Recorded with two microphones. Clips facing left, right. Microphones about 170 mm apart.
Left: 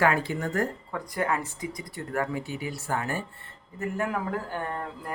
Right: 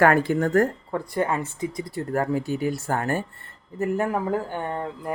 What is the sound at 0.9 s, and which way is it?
Speech, 25° right (ahead or behind).